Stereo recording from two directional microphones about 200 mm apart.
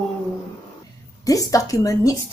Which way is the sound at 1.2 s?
15° left (ahead or behind).